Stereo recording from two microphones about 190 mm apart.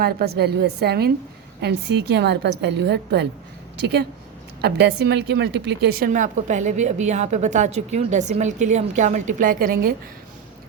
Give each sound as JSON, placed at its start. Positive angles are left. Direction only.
{"t": 0.0, "sound": "a woman's voice", "side_deg": -55}